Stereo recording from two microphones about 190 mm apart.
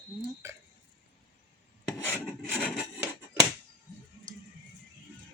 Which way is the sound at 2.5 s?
Centre (ahead or behind).